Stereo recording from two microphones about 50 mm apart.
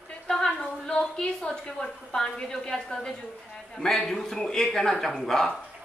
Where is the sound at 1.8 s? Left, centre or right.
Centre.